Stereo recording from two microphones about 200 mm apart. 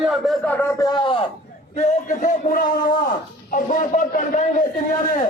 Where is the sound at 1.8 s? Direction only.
40° left (ahead or behind).